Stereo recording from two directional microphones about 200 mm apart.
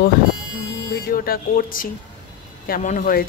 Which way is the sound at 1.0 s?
45° left (ahead or behind).